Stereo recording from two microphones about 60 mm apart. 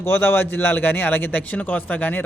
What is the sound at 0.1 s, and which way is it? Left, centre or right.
A man's voice, left.